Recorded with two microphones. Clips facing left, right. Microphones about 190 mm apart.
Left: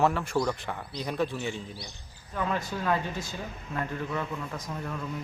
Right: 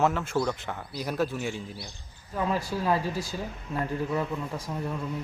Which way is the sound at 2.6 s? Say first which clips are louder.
Right 2 dB; 30° right (ahead or behind).